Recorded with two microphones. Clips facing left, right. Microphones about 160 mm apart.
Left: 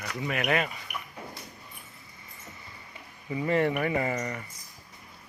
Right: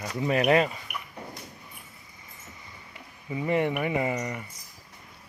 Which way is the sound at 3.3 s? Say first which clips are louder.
Even; 15° right (ahead or behind).